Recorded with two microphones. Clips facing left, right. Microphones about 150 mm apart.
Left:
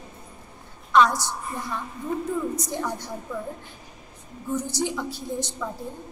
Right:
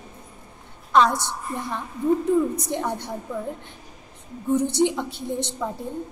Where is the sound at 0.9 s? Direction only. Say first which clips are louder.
Even; 30° right (ahead or behind).